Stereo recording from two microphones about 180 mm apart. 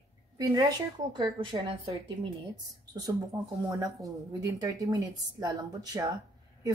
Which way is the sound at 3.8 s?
20° right (ahead or behind).